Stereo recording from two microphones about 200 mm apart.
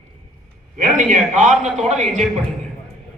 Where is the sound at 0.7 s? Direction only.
40° right (ahead or behind).